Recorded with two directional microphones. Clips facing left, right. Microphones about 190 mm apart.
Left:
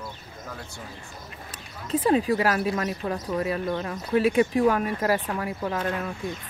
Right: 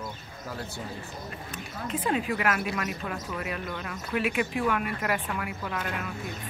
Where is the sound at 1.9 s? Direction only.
35° left (ahead or behind).